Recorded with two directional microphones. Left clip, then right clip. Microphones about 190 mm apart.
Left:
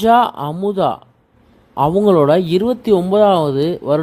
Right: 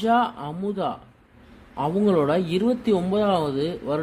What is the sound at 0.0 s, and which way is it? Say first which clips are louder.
Speech: left 9 dB; 35° left (ahead or behind).